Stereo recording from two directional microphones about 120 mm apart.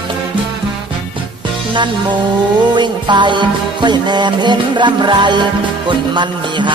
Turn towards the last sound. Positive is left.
turn(degrees=-40)  # may be behind; listen again after turning